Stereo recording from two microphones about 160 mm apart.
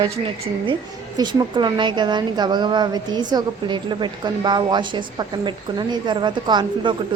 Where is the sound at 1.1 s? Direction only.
30° right (ahead or behind).